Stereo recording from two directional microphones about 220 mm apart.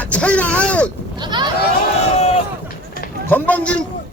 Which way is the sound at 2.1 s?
30° left (ahead or behind).